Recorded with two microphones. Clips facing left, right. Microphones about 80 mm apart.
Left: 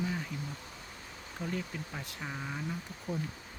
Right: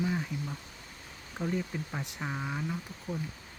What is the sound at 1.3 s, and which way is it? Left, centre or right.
Speech, centre.